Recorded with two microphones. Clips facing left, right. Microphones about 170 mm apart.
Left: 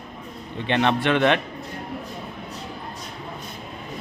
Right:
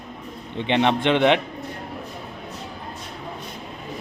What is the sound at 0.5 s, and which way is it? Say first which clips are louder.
Speech: right 1 dB; 20° right (ahead or behind).